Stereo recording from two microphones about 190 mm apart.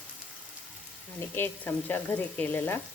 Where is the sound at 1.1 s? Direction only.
10° left (ahead or behind).